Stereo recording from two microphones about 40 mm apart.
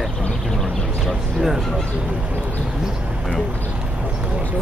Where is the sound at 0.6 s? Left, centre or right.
Centre.